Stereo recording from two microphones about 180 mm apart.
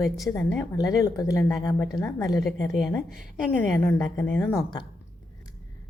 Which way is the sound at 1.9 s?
20° left (ahead or behind).